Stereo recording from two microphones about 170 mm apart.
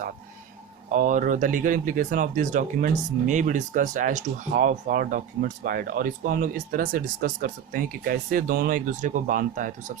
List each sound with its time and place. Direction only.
0.9 s speech: 50° right (ahead or behind)